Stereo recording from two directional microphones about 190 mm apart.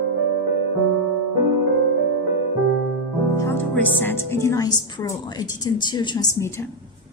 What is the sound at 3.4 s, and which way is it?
A woman's voice, 10° left (ahead or behind).